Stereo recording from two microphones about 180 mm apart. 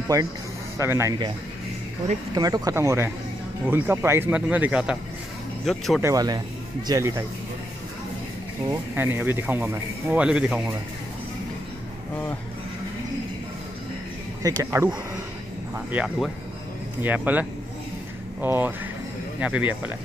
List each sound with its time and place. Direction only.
0.1 s speech: 20° right (ahead or behind)
2.3 s speech: 20° right (ahead or behind); by 6.0 s centre (ahead or behind)
6.0 s speech: 20° right (ahead or behind)
8.6 s speech: 10° right (ahead or behind)
14.6 s speech: 15° right (ahead or behind)
15.9 s speech: 5° right (ahead or behind)